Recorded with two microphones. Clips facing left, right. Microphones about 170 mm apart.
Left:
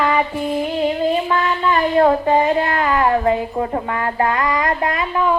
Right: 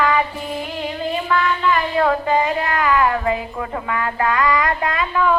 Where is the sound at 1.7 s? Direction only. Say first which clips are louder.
Left 7 dB; 35° left (ahead or behind).